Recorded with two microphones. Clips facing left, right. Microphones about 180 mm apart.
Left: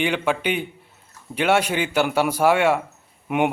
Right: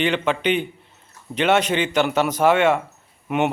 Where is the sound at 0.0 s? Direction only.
10° left (ahead or behind).